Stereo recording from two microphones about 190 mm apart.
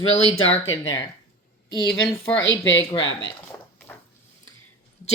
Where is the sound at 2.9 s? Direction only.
25° left (ahead or behind).